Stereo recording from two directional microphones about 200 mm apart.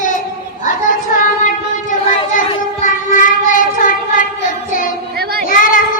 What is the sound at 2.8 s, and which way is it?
Child singing, 40° left (ahead or behind).